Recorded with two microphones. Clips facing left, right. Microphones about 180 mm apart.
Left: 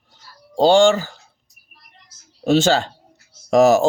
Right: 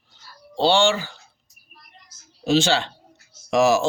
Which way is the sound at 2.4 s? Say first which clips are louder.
Left 4 dB; 50° left (ahead or behind).